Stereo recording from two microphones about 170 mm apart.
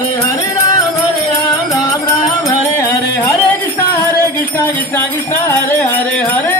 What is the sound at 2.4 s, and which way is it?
Music, 15° left (ahead or behind).